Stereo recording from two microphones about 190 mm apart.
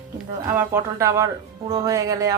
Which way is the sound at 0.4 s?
15° right (ahead or behind).